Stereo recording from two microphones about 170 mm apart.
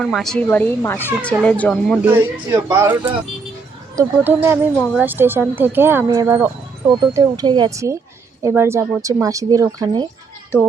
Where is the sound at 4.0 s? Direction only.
15° right (ahead or behind).